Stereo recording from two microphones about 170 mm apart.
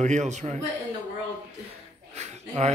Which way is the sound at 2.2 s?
40° right (ahead or behind).